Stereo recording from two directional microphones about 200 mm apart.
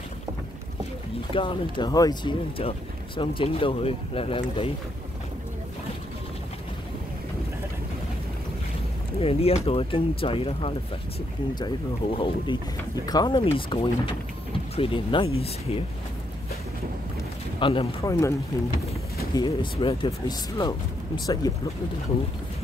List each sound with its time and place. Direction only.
1.3 s speech: 25° left (ahead or behind)
9.2 s speech: 30° left (ahead or behind)
17.6 s speech: 25° left (ahead or behind)
19.3 s speech: 25° left (ahead or behind)